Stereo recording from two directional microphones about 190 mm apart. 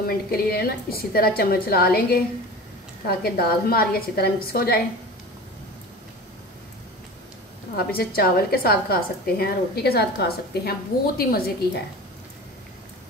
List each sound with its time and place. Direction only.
0.0 s a woman's voice: 55° left (ahead or behind)
7.7 s a woman's voice: 55° left (ahead or behind)